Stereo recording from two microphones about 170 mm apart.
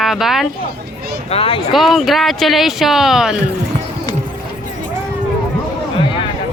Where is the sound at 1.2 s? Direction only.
35° left (ahead or behind).